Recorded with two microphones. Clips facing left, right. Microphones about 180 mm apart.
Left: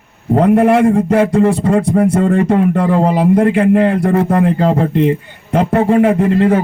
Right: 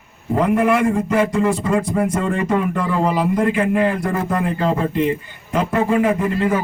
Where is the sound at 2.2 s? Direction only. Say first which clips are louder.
Left 7 dB; 60° left (ahead or behind).